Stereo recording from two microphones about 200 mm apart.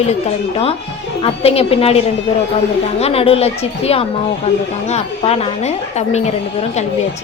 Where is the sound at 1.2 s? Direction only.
30° left (ahead or behind).